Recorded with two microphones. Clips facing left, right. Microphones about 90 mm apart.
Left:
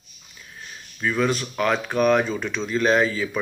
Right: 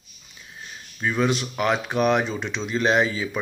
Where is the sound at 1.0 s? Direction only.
20° right (ahead or behind).